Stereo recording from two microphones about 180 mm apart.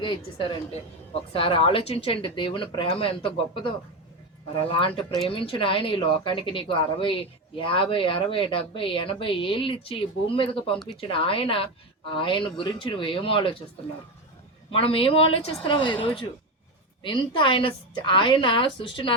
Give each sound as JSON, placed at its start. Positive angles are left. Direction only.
{"t": 0.0, "sound": "a woman's voice", "side_deg": 25}
{"t": 14.7, "sound": "a woman's voice", "side_deg": 30}